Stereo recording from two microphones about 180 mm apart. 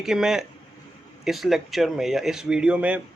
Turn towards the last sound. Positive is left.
turn(degrees=-10)  # may be behind; listen again after turning